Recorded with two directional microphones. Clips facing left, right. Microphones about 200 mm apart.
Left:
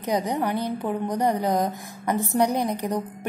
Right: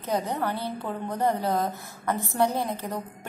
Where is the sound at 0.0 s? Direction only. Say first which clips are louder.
Left 3 dB; 15° left (ahead or behind).